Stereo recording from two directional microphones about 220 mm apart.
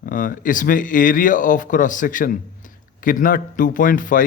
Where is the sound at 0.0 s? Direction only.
40° left (ahead or behind).